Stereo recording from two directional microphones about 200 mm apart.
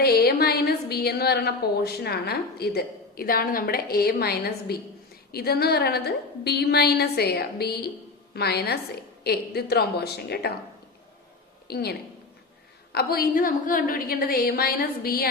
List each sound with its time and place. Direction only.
0.0 s a woman's voice: 50° left (ahead or behind)
11.7 s a woman's voice: 50° left (ahead or behind)